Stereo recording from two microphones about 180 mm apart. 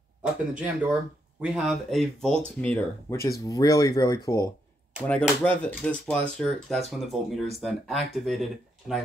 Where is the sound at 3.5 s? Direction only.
20° left (ahead or behind).